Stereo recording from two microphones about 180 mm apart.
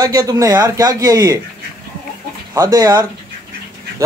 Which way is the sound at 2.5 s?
20° right (ahead or behind).